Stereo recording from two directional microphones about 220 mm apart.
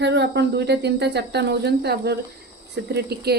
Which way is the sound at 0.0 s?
50° right (ahead or behind).